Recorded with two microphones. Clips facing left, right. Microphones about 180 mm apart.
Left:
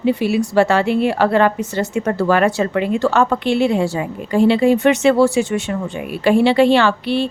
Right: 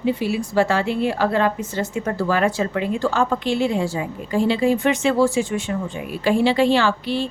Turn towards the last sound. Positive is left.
turn(degrees=70)  # may be behind; listen again after turning